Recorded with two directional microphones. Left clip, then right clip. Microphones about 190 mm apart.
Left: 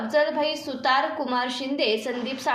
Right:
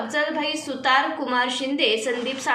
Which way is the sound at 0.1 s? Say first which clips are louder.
Left 3 dB; 45° left (ahead or behind).